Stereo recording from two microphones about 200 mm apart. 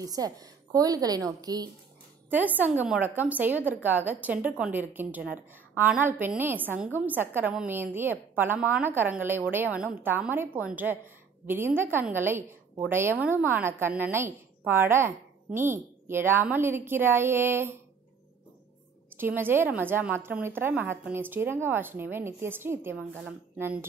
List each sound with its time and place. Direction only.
0.0 s a woman's voice: 20° right (ahead or behind)
2.3 s a woman's voice: 10° right (ahead or behind)
19.1 s a woman's voice: 10° right (ahead or behind)